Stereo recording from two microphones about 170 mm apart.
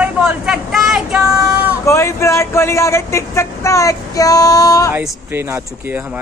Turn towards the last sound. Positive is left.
turn(degrees=-15)  # may be behind; listen again after turning